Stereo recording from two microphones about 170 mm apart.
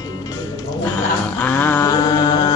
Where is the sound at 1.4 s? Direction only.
15° left (ahead or behind).